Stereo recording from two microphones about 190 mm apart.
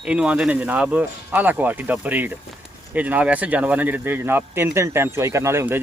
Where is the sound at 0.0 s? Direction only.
5° right (ahead or behind).